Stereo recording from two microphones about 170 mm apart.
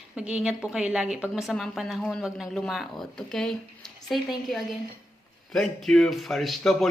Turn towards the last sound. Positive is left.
turn(degrees=0)  # may be behind; listen again after turning